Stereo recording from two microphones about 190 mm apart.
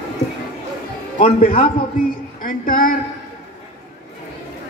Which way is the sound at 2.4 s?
50° left (ahead or behind).